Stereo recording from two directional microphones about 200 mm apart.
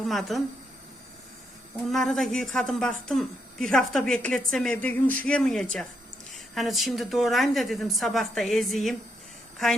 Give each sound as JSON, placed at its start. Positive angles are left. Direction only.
{"t": 0.0, "sound": "speech", "side_deg": 0}
{"t": 1.9, "sound": "a woman's voice", "side_deg": 0}